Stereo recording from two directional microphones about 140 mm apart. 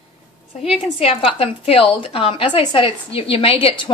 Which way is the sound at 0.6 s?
45° left (ahead or behind).